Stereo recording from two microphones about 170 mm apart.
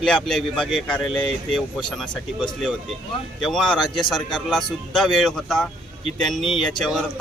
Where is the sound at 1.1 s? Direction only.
30° left (ahead or behind).